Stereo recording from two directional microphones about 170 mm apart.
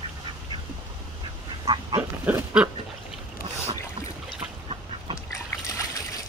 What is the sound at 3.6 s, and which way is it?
Boat, 40° right (ahead or behind).